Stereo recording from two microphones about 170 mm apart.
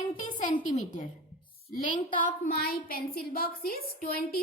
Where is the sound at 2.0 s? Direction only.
55° left (ahead or behind).